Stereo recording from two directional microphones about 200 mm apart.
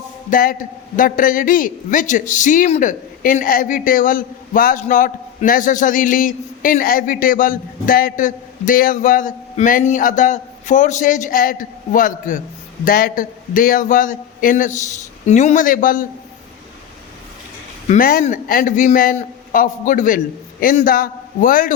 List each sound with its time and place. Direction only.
0.3 s a man's voice: 45° left (ahead or behind)
17.8 s a man's voice: 45° left (ahead or behind)